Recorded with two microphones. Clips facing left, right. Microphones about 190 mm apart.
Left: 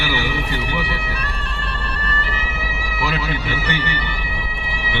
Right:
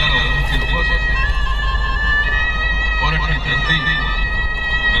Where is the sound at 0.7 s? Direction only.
60° left (ahead or behind).